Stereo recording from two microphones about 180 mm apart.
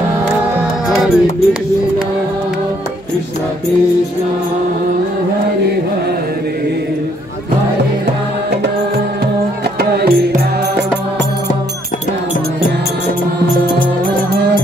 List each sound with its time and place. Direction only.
0.8 s music: centre (ahead or behind)
9.8 s music: 60° right (ahead or behind)